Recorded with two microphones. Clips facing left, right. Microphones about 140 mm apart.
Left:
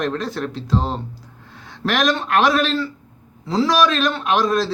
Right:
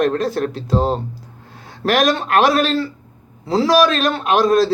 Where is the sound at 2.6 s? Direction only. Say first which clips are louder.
Right 3 dB; 40° right (ahead or behind).